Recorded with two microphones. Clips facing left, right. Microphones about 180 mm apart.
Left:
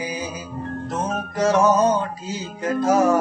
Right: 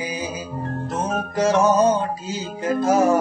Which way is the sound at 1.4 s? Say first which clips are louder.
Even; 25° right (ahead or behind).